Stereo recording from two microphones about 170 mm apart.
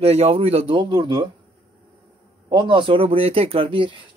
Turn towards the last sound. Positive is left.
turn(degrees=-30)  # may be behind; listen again after turning